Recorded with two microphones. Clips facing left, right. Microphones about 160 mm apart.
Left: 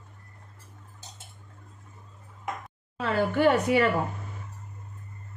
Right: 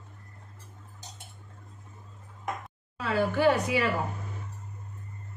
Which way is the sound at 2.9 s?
60° left (ahead or behind).